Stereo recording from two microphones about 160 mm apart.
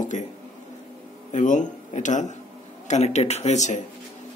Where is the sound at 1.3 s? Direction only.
50° left (ahead or behind).